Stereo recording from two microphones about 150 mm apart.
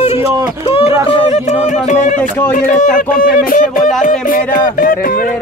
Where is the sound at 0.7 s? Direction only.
40° left (ahead or behind).